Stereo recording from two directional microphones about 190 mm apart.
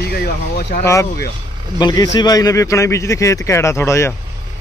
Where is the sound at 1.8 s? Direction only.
20° left (ahead or behind).